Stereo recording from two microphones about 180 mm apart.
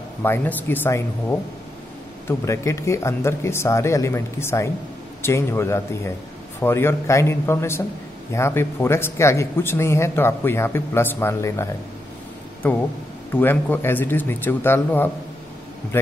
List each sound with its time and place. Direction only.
0.2 s a man's voice: 10° left (ahead or behind)